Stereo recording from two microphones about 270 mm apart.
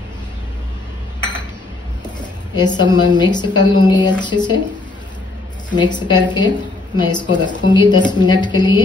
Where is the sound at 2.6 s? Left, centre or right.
Centre.